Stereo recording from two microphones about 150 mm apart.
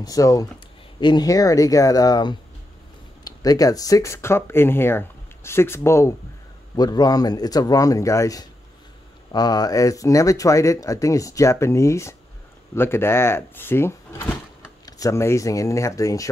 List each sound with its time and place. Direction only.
0.0 s speech: 25° left (ahead or behind)